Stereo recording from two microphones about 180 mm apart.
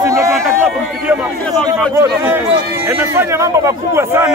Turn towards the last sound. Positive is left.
turn(degrees=-15)  # may be behind; listen again after turning